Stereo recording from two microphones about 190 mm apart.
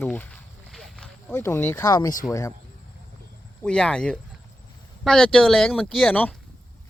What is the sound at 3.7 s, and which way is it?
Speech, 5° left (ahead or behind).